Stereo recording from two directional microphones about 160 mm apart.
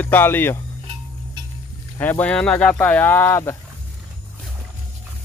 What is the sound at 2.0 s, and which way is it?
Speech, 10° left (ahead or behind).